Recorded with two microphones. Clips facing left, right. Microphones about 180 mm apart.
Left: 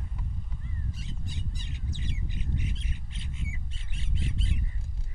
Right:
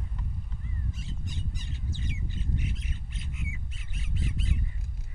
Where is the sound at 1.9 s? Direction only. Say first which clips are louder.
Right 1 dB; 15° left (ahead or behind).